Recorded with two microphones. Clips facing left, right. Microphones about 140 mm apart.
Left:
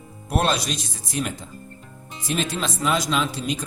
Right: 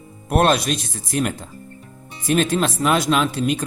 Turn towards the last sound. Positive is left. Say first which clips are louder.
# right 5 dB
turn(degrees=-55)  # may be behind; listen again after turning